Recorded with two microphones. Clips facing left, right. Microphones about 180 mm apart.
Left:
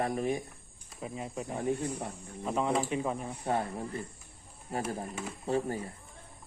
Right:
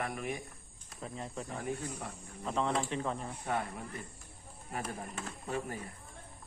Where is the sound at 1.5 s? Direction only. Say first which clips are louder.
Left 8 dB; 25° left (ahead or behind).